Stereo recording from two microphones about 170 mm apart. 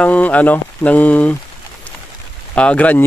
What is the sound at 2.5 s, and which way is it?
Speech, 5° left (ahead or behind).